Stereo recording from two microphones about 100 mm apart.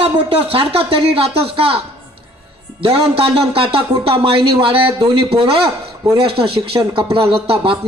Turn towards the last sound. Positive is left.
turn(degrees=-60)  # may be behind; listen again after turning